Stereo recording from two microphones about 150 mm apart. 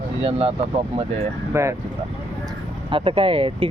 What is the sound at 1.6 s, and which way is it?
Speech, 20° right (ahead or behind).